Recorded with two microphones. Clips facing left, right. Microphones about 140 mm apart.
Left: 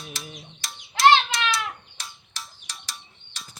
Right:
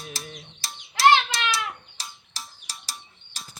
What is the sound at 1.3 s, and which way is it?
Bird, 30° right (ahead or behind).